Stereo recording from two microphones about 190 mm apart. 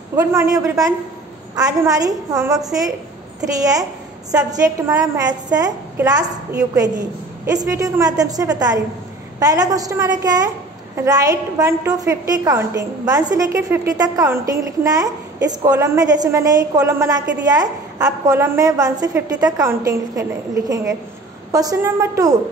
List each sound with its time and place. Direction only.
0.1 s a woman's voice: 20° right (ahead or behind)
4.3 s a woman's voice: 20° right (ahead or behind)
7.4 s a woman's voice: 20° right (ahead or behind)